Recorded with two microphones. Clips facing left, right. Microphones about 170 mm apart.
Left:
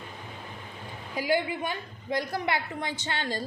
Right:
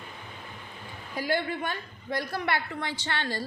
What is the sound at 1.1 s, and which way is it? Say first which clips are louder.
A woman's voice: left 2 dB; 15° left (ahead or behind).